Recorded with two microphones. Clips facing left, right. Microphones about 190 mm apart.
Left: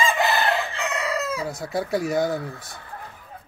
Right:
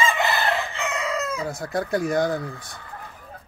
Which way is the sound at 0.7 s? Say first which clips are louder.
Even; centre (ahead or behind).